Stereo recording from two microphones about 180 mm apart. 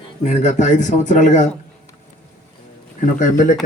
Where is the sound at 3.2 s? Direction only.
45° left (ahead or behind).